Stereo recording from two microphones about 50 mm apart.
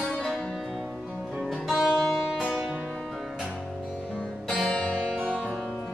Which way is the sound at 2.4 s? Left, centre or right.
Right.